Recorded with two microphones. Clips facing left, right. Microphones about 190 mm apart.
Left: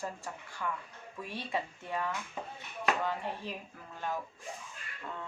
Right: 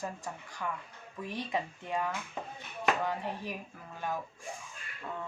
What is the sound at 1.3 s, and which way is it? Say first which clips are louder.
A woman's voice: right 2 dB; 15° right (ahead or behind).